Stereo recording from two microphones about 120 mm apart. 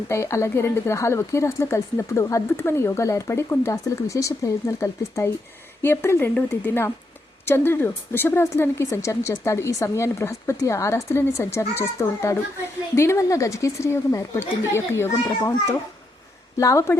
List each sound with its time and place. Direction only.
0.1 s speech: 25° left (ahead or behind)